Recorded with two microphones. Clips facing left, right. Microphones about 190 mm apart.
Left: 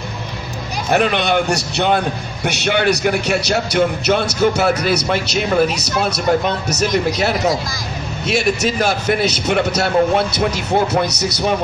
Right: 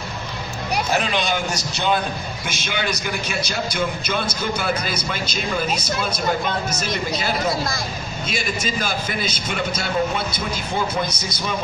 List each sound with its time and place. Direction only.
0.9 s a man's voice: 60° left (ahead or behind)